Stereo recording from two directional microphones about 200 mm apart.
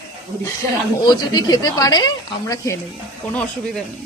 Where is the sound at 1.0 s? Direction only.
20° left (ahead or behind).